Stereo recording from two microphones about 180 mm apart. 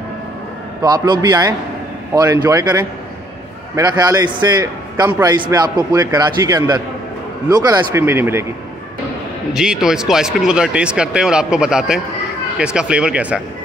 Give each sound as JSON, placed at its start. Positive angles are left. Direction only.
{"t": 0.8, "sound": "a man's voice", "side_deg": -25}
{"t": 9.5, "sound": "speech", "side_deg": -5}